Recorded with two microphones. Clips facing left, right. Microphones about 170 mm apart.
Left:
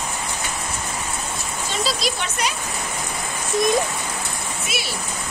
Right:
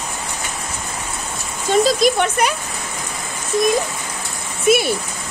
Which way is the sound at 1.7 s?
50° right (ahead or behind).